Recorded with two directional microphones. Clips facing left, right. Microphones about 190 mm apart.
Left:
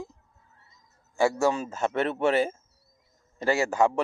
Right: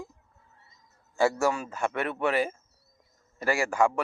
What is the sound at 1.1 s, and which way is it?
Speech, 15° left (ahead or behind).